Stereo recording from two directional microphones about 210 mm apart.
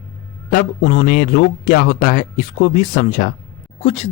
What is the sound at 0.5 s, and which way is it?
Speech, 55° left (ahead or behind).